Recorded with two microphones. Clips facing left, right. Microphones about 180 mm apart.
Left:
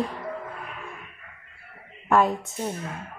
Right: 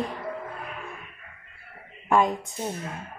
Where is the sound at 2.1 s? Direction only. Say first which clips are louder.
Left 1 dB; centre (ahead or behind).